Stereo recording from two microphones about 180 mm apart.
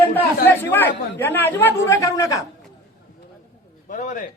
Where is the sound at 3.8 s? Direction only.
45° left (ahead or behind).